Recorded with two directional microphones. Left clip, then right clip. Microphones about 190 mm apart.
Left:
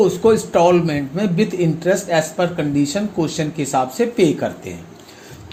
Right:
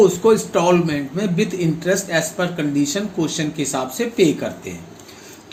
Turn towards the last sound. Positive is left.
turn(degrees=45)  # may be behind; listen again after turning